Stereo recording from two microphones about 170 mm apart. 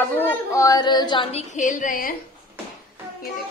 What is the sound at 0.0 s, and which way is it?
A woman's voice, 10° left (ahead or behind).